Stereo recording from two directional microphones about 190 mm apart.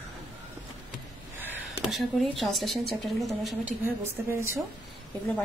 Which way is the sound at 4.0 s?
15° right (ahead or behind).